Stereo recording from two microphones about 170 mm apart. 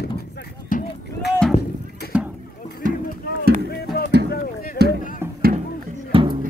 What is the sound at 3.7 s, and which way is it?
Music, 65° left (ahead or behind).